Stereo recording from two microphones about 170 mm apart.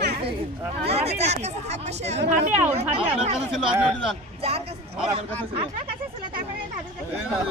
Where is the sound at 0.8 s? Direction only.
40° right (ahead or behind).